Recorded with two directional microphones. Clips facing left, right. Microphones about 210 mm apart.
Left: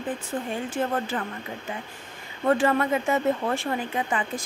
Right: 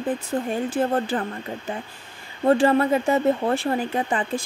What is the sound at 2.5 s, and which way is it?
A woman's voice, 30° right (ahead or behind).